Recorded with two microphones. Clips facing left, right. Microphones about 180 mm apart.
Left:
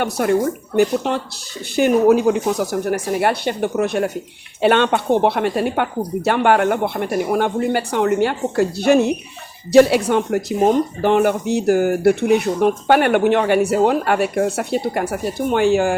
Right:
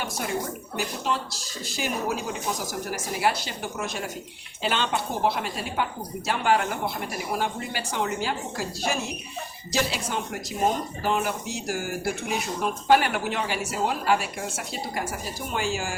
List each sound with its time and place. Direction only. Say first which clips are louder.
0.0 s speech: left 12 dB; 60° left (ahead or behind)